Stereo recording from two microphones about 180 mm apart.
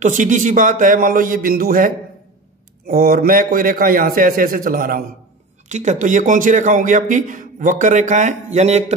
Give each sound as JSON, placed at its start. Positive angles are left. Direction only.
{"t": 0.0, "sound": "a man's voice", "side_deg": -45}
{"t": 5.7, "sound": "a man's voice", "side_deg": -40}